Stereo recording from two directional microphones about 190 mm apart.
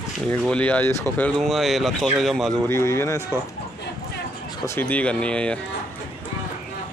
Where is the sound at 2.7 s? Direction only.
15° left (ahead or behind).